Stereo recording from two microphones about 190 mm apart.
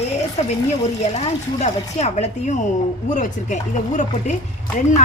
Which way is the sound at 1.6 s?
35° left (ahead or behind).